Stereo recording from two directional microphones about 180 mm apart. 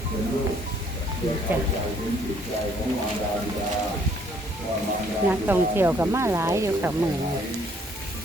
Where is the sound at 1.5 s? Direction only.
10° right (ahead or behind).